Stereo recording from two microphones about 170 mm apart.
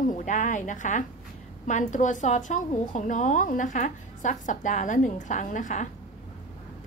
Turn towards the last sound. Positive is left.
turn(degrees=45)  # may be behind; listen again after turning